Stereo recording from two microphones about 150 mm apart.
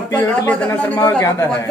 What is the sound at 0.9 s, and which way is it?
Speech, 20° left (ahead or behind).